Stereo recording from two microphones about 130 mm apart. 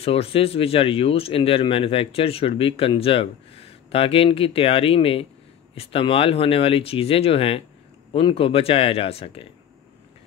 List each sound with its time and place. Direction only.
0.0 s speech: 50° left (ahead or behind)